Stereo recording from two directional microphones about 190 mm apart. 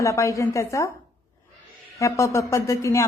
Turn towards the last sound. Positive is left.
turn(degrees=15)  # may be behind; listen again after turning